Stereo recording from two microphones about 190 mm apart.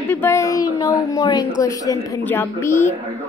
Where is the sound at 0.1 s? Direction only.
15° left (ahead or behind).